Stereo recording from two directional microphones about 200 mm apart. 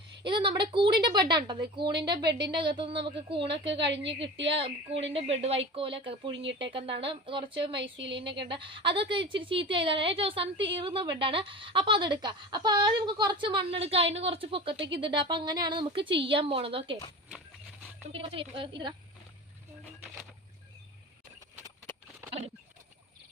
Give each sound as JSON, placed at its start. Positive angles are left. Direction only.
{"t": 0.2, "sound": "a woman's voice", "side_deg": -25}
{"t": 3.7, "sound": "a woman's voice", "side_deg": -60}
{"t": 4.0, "sound": "a woman's voice", "side_deg": -25}
{"t": 6.3, "sound": "a woman's voice", "side_deg": -65}
{"t": 7.0, "sound": "a woman's voice", "side_deg": -25}
{"t": 18.1, "sound": "a woman's voice", "side_deg": -25}